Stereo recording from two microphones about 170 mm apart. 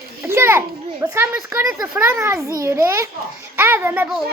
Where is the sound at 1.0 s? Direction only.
10° right (ahead or behind).